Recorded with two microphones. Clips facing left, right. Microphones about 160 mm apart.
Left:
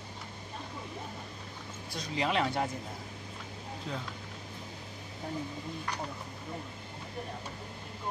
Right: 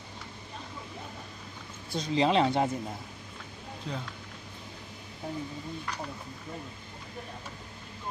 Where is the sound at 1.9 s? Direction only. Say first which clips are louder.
Right 6 dB; 25° right (ahead or behind).